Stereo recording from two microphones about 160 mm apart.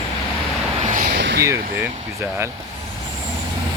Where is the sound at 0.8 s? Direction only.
55° right (ahead or behind).